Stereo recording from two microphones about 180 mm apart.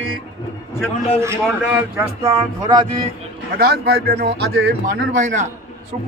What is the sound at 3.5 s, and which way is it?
A man's voice, 60° right (ahead or behind).